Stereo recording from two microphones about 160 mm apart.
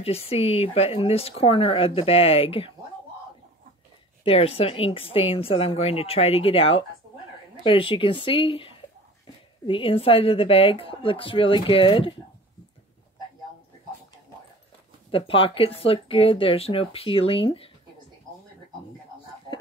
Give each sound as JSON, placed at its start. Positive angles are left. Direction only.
{"t": 0.0, "sound": "speech", "side_deg": 40}
{"t": 4.2, "sound": "speech", "side_deg": 35}
{"t": 15.0, "sound": "speech", "side_deg": 35}